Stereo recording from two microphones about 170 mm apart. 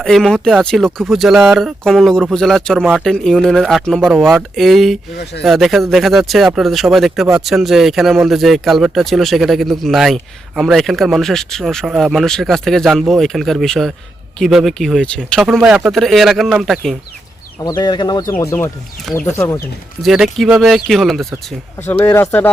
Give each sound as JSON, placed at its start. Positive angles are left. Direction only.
{"t": 0.0, "sound": "speech", "side_deg": 0}
{"t": 5.1, "sound": "speech", "side_deg": 80}
{"t": 5.4, "sound": "speech", "side_deg": 0}
{"t": 17.6, "sound": "speech", "side_deg": 25}
{"t": 20.0, "sound": "speech", "side_deg": 0}
{"t": 21.8, "sound": "speech", "side_deg": 15}